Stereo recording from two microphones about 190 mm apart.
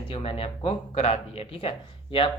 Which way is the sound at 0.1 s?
30° left (ahead or behind).